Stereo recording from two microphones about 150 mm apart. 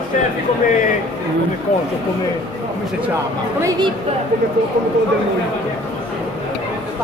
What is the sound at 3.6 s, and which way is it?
Speech, 30° right (ahead or behind).